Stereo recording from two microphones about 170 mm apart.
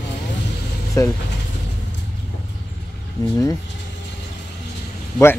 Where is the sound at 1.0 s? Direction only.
15° left (ahead or behind).